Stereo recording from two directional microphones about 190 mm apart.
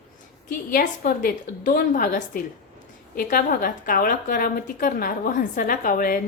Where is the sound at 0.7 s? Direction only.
45° left (ahead or behind).